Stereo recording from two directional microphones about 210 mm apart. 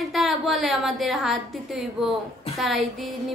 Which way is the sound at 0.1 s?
Centre (ahead or behind).